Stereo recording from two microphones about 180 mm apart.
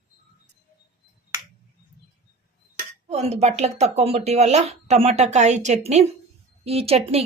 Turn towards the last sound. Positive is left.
turn(degrees=-35)  # may be behind; listen again after turning